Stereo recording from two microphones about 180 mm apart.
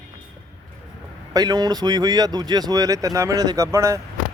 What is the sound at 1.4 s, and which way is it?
Speech, 20° right (ahead or behind).